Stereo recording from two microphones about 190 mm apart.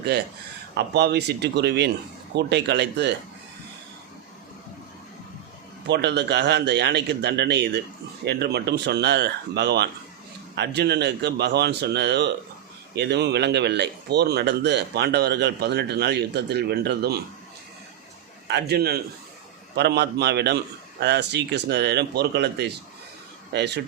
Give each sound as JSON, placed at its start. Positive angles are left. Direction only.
{"t": 0.8, "sound": "speech", "side_deg": -60}
{"t": 5.9, "sound": "speech", "side_deg": -65}
{"t": 18.4, "sound": "speech", "side_deg": -60}